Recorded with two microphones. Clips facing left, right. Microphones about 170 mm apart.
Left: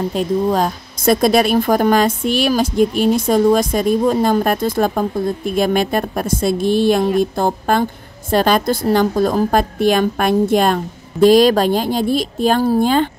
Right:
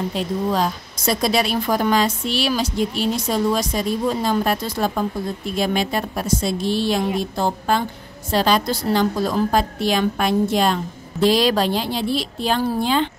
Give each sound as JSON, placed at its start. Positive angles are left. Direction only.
{"t": 0.1, "sound": "a woman's voice", "side_deg": 50}